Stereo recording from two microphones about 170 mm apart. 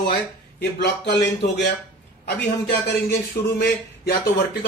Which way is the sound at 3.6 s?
65° left (ahead or behind).